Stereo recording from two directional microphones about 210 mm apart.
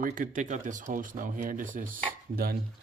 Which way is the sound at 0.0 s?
40° right (ahead or behind).